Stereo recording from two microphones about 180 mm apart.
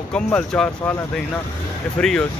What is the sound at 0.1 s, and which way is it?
Speech, 5° left (ahead or behind).